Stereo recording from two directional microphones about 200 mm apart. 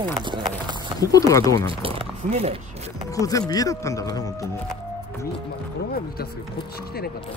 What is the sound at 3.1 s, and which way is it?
Speech, 15° left (ahead or behind).